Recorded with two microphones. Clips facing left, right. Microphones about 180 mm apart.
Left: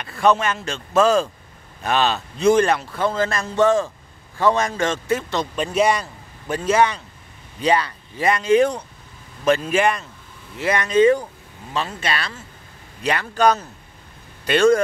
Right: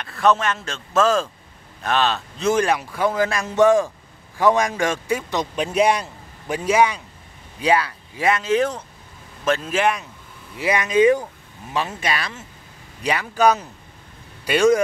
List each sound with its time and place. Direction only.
0.0 s a man's voice: centre (ahead or behind)